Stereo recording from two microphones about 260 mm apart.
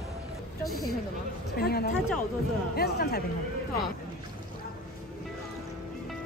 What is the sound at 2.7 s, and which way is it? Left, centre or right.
Speech, left.